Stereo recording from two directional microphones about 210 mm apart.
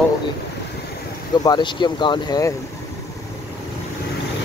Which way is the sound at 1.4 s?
20° left (ahead or behind).